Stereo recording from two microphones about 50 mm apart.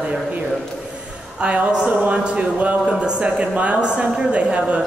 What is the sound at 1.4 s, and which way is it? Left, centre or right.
Speech, right.